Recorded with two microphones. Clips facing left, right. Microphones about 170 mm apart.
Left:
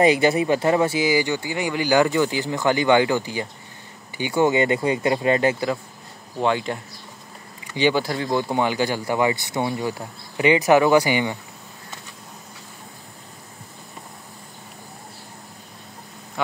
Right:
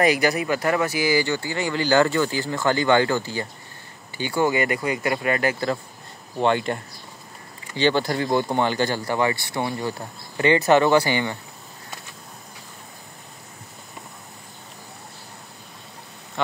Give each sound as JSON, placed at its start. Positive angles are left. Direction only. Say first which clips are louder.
{"t": 0.0, "sound": "speech", "louder": "left 3 dB", "side_deg": 25}
{"t": 6.4, "sound": "speech", "louder": "right 1 dB", "side_deg": 0}